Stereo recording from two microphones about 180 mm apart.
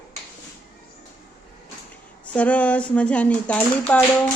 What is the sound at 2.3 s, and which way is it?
Speech, 10° left (ahead or behind).